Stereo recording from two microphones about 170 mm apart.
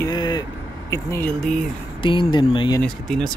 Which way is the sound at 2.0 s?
30° left (ahead or behind).